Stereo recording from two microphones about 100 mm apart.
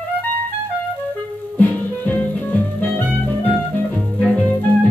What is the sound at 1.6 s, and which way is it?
Music, 15° left (ahead or behind).